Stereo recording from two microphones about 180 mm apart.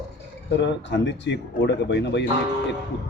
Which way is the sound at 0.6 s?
75° left (ahead or behind).